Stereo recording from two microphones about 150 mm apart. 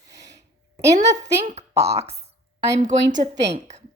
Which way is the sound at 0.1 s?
20° right (ahead or behind).